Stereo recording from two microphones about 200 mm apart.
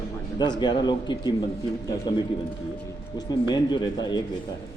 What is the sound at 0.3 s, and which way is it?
A man's voice, 20° left (ahead or behind).